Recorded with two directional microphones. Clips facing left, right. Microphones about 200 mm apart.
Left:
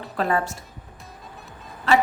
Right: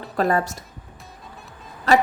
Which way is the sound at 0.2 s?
40° right (ahead or behind).